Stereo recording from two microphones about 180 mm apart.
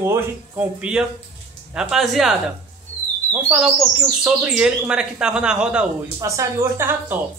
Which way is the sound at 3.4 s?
5° right (ahead or behind).